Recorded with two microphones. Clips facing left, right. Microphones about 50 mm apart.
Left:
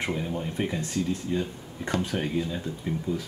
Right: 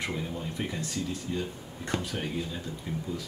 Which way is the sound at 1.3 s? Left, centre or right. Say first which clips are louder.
Left 4 dB; left.